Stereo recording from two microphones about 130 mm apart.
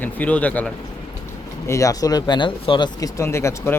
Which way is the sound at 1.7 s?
25° left (ahead or behind).